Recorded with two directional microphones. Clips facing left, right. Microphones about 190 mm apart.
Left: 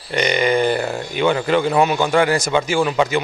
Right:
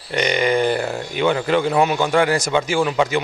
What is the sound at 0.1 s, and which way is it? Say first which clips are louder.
A man's voice: left 1 dB; 15° left (ahead or behind).